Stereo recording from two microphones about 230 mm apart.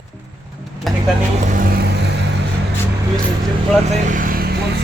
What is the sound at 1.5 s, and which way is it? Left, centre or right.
Music, right.